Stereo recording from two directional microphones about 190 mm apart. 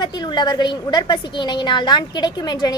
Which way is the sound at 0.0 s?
20° left (ahead or behind).